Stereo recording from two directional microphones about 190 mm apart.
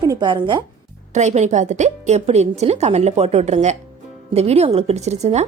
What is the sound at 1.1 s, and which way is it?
A woman's voice, 35° right (ahead or behind).